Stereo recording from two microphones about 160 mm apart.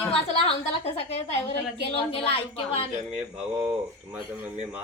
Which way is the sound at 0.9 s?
40° left (ahead or behind).